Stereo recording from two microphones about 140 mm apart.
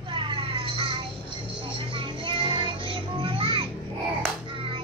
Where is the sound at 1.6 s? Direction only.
40° right (ahead or behind).